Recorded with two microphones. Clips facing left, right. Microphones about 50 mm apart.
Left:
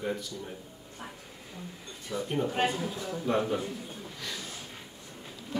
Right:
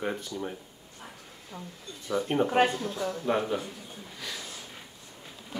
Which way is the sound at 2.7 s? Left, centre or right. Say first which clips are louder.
Even; centre.